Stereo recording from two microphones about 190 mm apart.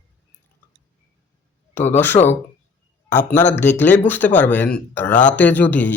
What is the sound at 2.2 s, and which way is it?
Speech, 30° left (ahead or behind).